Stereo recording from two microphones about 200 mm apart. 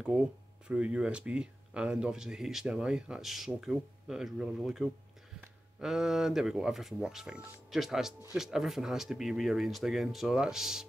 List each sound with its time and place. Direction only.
0.7 s speech: 5° right (ahead or behind)